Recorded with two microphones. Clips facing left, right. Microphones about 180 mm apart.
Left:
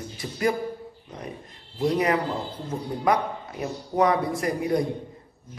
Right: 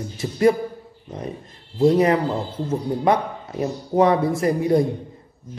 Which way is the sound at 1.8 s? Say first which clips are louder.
Right 7 dB; 30° right (ahead or behind).